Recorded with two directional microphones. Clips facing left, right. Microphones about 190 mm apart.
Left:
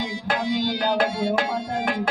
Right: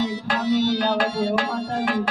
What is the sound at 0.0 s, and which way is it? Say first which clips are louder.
Music: right 2 dB; 15° left (ahead or behind).